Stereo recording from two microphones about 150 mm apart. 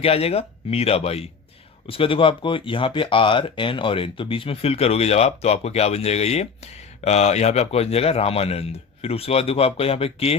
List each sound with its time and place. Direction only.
0.0 s speech: 40° left (ahead or behind)